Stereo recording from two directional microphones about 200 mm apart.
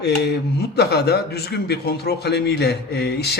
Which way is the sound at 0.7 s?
55° left (ahead or behind).